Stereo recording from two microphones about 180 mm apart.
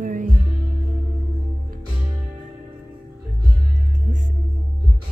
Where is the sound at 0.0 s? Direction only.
45° right (ahead or behind).